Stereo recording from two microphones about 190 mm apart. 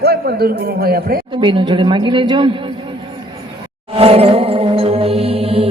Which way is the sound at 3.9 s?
30° right (ahead or behind).